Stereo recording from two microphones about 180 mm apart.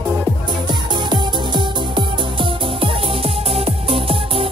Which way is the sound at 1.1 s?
25° right (ahead or behind).